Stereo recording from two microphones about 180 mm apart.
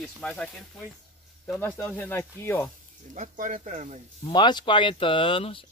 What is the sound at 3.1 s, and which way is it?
Speech, 45° right (ahead or behind).